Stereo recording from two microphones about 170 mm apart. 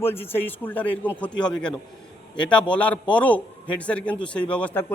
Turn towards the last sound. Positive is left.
turn(degrees=10)  # may be behind; listen again after turning